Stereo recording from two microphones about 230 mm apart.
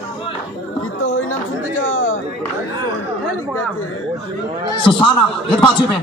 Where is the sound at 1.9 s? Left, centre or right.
Left.